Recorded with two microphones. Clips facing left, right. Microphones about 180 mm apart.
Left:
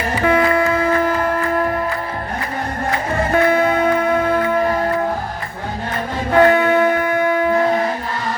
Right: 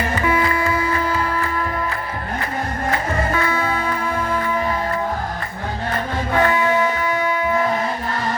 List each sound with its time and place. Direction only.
0.3 s music: 65° left (ahead or behind)
3.3 s music: 55° left (ahead or behind)
6.3 s music: 60° left (ahead or behind)